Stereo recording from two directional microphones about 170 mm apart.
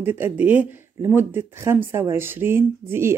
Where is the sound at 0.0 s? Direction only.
10° right (ahead or behind).